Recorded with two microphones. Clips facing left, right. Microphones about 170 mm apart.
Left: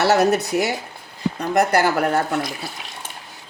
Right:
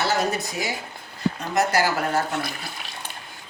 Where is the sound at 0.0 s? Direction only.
70° left (ahead or behind).